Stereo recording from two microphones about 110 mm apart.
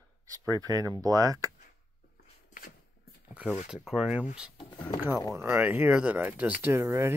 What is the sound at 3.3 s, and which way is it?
Speech, 10° right (ahead or behind).